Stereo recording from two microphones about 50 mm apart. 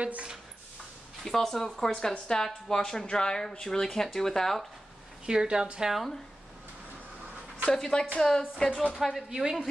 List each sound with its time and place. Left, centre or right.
0.0 s speech: right
1.2 s a woman's voice: centre
5.2 s speech: centre
7.7 s a woman's voice: centre
8.9 s speech: centre